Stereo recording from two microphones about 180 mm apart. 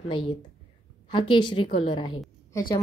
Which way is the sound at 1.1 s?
25° left (ahead or behind).